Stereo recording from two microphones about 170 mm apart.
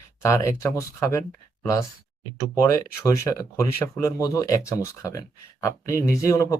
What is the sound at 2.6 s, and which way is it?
Speech, 15° left (ahead or behind).